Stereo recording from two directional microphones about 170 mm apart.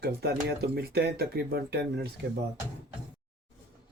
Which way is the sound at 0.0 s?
70° right (ahead or behind).